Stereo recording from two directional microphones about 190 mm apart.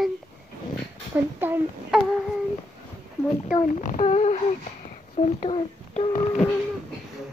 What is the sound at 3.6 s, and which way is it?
Speech, 40° left (ahead or behind).